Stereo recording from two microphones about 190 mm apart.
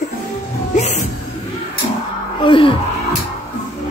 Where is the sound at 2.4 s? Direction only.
25° left (ahead or behind).